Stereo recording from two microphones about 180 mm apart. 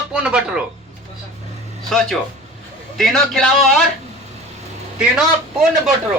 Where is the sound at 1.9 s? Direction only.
Centre (ahead or behind).